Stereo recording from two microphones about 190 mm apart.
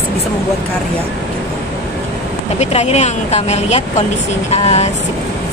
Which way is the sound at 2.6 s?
35° left (ahead or behind).